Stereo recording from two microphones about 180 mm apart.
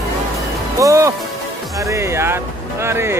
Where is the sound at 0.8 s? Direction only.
15° right (ahead or behind).